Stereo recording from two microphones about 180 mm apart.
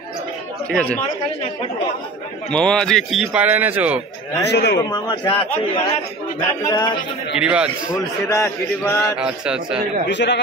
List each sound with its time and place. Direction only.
0.7 s a man's voice: 5° left (ahead or behind)
2.5 s a man's voice: 5° left (ahead or behind)
4.4 s a man's voice: 70° left (ahead or behind)
4.8 s a man's voice: 25° left (ahead or behind)
7.3 s a man's voice: 5° right (ahead or behind)
8.3 s chant: 15° left (ahead or behind)
9.2 s a man's voice: 5° right (ahead or behind)
10.0 s a man's voice: 75° left (ahead or behind)